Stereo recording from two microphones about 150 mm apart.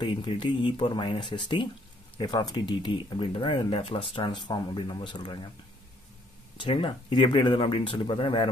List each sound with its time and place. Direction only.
0.0 s speech: 35° left (ahead or behind)
6.6 s speech: 35° left (ahead or behind)